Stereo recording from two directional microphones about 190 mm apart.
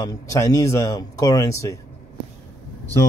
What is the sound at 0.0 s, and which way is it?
Speech, 20° left (ahead or behind).